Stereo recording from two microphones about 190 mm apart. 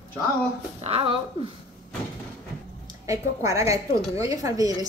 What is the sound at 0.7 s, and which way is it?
Speech, 30° right (ahead or behind).